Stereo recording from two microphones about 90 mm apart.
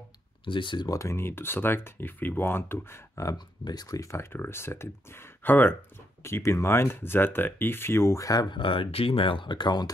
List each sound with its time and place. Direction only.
0.5 s speech: 65° left (ahead or behind)
0.8 s speech: 35° left (ahead or behind)
3.3 s speech: 50° left (ahead or behind); by 5.8 s 20° left (ahead or behind)
6.2 s speech: 30° left (ahead or behind)
8.5 s speech: 70° left (ahead or behind); by 9.9 s 50° left (ahead or behind)